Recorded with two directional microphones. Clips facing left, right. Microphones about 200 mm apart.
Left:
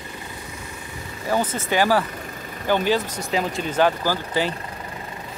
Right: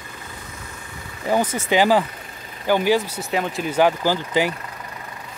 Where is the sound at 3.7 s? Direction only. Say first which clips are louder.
Right 2 dB; 15° right (ahead or behind).